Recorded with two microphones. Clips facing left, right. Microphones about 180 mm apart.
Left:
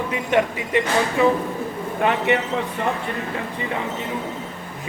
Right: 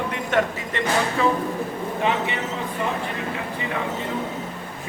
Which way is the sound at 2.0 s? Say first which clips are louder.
Left 5 dB; 60° left (ahead or behind).